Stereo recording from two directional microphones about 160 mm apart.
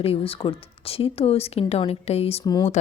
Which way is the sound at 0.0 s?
35° left (ahead or behind).